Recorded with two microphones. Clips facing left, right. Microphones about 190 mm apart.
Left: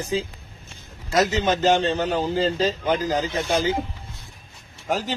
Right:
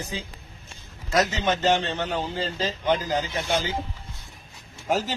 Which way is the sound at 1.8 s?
35° left (ahead or behind).